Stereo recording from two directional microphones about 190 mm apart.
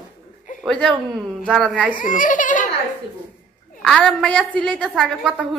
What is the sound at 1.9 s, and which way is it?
Speech, 45° left (ahead or behind).